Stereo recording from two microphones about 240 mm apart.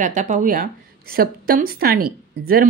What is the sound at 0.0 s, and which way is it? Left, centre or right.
A woman's voice, right.